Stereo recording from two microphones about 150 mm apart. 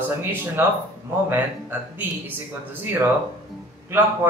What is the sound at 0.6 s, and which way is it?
Speech, 15° right (ahead or behind).